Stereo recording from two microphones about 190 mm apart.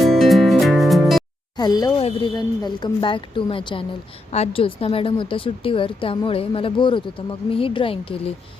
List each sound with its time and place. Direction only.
0.0 s music: centre (ahead or behind)
1.5 s a woman's voice: 20° left (ahead or behind)